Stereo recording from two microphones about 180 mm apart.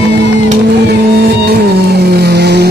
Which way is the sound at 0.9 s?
60° right (ahead or behind).